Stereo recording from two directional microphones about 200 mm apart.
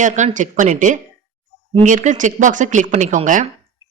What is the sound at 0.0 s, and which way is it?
Speech, 40° right (ahead or behind).